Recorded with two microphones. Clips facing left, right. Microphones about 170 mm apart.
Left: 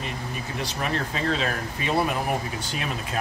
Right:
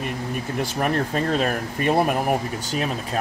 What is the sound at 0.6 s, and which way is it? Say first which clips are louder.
Speech: right 5 dB; 50° right (ahead or behind).